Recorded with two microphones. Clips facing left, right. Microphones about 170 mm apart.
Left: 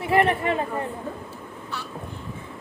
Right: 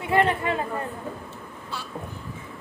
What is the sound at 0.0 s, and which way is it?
Speech, 25° left (ahead or behind).